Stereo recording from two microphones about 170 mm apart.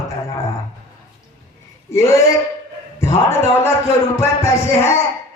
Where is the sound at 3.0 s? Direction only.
15° left (ahead or behind).